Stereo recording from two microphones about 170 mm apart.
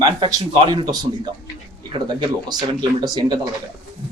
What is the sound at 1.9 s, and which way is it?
A man's voice, 25° right (ahead or behind).